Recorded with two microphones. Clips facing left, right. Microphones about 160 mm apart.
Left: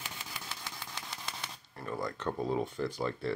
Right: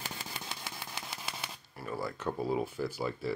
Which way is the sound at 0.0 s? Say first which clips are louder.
Right 3 dB; 35° right (ahead or behind).